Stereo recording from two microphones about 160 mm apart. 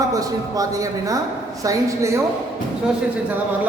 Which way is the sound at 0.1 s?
20° right (ahead or behind).